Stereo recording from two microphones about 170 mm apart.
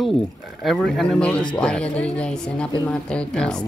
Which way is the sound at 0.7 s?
Centre (ahead or behind).